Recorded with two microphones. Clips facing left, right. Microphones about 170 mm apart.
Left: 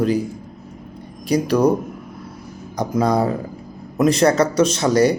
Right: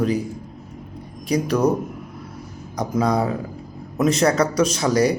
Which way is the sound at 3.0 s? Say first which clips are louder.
Left 2 dB; 30° left (ahead or behind).